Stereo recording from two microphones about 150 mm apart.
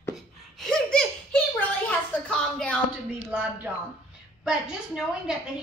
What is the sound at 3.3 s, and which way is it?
A woman's voice, 5° right (ahead or behind).